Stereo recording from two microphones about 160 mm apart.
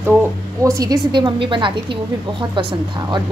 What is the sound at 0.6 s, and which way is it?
A woman's voice, 20° right (ahead or behind).